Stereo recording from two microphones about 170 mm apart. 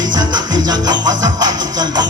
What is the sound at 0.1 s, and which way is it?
Music, 25° right (ahead or behind).